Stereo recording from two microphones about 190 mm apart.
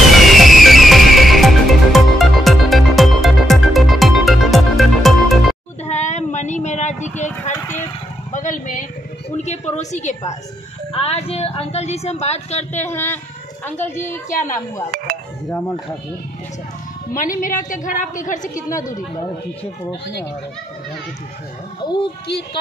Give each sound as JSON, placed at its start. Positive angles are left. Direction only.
{"t": 0.2, "sound": "music", "side_deg": 0}
{"t": 5.9, "sound": "a sound", "side_deg": 35}
{"t": 8.3, "sound": "a sound", "side_deg": 40}
{"t": 10.9, "sound": "speech", "side_deg": 30}
{"t": 12.8, "sound": "a woman's voice", "side_deg": 10}
{"t": 17.1, "sound": "a woman's voice", "side_deg": 45}